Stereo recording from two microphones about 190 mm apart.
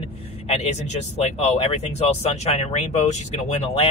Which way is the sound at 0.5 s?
35° left (ahead or behind).